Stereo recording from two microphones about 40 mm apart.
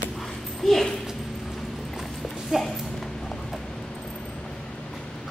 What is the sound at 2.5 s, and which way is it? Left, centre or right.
Speech, centre.